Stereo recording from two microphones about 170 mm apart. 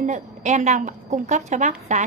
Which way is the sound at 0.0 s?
45° right (ahead or behind).